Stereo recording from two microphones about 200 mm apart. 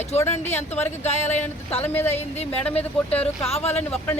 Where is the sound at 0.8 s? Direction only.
35° left (ahead or behind).